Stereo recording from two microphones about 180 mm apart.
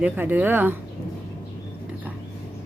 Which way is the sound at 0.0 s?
10° right (ahead or behind).